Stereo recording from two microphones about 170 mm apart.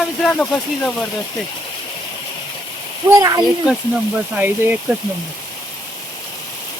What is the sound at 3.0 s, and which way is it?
Speech, 20° right (ahead or behind).